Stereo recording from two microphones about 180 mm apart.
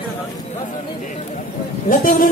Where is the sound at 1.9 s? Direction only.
45° left (ahead or behind).